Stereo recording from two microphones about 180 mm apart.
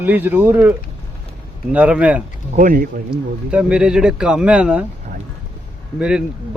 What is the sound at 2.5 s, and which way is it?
Speech, 50° right (ahead or behind).